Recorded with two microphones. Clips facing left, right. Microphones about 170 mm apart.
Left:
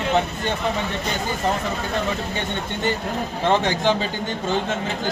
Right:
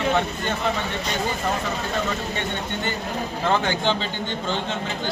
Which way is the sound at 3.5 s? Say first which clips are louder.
Left 3 dB; 40° left (ahead or behind).